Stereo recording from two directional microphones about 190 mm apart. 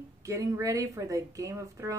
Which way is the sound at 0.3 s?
15° right (ahead or behind).